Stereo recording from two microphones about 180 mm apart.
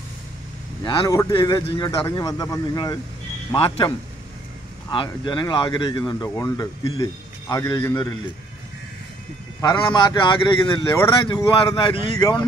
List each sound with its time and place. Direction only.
0.8 s speech: 25° left (ahead or behind)
4.9 s speech: 25° left (ahead or behind)
9.6 s speech: 25° left (ahead or behind)